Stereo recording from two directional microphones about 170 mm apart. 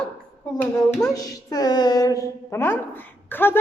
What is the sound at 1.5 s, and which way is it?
Speech, 25° left (ahead or behind).